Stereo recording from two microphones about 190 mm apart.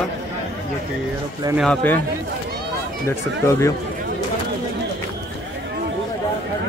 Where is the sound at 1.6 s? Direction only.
5° left (ahead or behind).